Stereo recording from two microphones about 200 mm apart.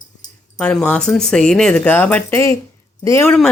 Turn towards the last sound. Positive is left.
turn(degrees=15)  # may be behind; listen again after turning